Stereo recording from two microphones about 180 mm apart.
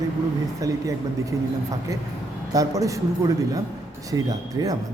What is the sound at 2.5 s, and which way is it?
A man's voice, 20° right (ahead or behind).